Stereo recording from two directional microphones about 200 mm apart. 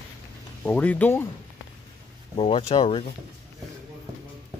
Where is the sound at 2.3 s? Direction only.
30° left (ahead or behind).